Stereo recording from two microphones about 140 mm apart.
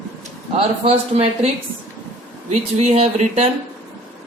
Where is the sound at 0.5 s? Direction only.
45° right (ahead or behind).